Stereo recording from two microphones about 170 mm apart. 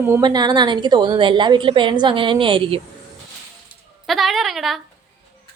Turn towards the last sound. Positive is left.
turn(degrees=0)  # may be behind; listen again after turning